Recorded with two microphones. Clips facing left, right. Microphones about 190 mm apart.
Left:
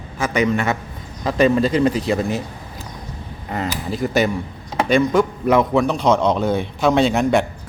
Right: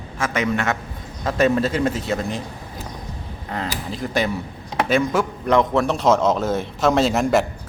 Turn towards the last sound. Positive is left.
turn(degrees=0)  # may be behind; listen again after turning